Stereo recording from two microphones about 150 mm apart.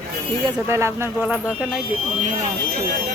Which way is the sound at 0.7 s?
20° right (ahead or behind).